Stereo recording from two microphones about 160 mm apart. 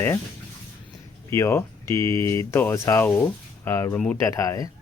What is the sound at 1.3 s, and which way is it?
Speech, 15° left (ahead or behind).